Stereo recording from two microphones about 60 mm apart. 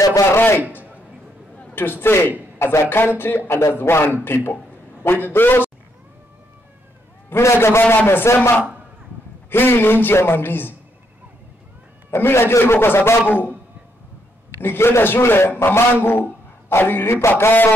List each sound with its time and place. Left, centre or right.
0.0 s a sound: left
0.3 s a man's voice: left
1.8 s a man's voice: left
7.5 s a man's voice: left
7.8 s a man's voice: left
12.1 s a man's voice: left
14.6 s a man's voice: left